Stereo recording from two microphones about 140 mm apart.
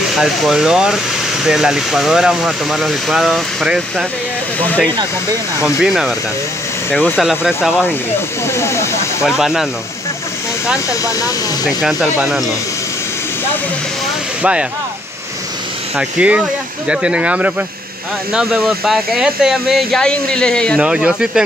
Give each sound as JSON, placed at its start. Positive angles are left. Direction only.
{"t": 0.1, "sound": "speech", "side_deg": 0}
{"t": 5.8, "sound": "speech", "side_deg": -5}
{"t": 6.9, "sound": "speech", "side_deg": 10}
{"t": 7.2, "sound": "speech", "side_deg": -5}
{"t": 8.5, "sound": "speech", "side_deg": 20}
{"t": 9.4, "sound": "speech", "side_deg": -5}
{"t": 11.8, "sound": "speech", "side_deg": -5}
{"t": 14.4, "sound": "speech", "side_deg": -10}
{"t": 16.0, "sound": "speech", "side_deg": -10}
{"t": 20.8, "sound": "speech", "side_deg": -5}